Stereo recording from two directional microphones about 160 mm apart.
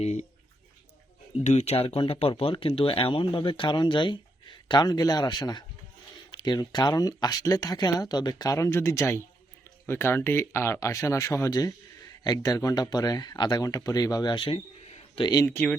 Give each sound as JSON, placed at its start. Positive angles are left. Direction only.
{"t": 0.0, "sound": "speech", "side_deg": 45}
{"t": 1.5, "sound": "speech", "side_deg": 40}
{"t": 15.5, "sound": "speech", "side_deg": 10}